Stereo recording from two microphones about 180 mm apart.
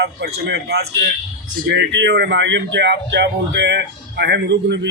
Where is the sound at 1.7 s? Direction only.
80° right.